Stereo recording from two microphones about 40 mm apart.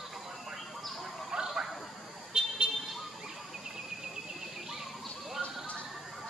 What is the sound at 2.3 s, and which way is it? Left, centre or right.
Vehicle, centre.